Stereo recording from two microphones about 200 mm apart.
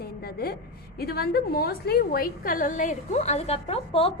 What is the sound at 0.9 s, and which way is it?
A woman's voice, 50° left (ahead or behind).